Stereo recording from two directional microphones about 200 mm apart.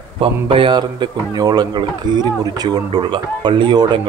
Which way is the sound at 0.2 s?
25° right (ahead or behind).